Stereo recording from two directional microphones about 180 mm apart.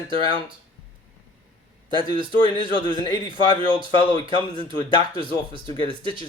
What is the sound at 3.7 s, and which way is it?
Speech, 30° right (ahead or behind).